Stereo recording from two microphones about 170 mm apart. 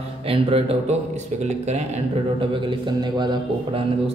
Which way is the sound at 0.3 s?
35° right (ahead or behind).